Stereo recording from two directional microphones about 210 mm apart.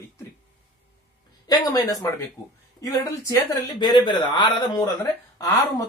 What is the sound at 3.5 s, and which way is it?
A man's voice, 20° left (ahead or behind).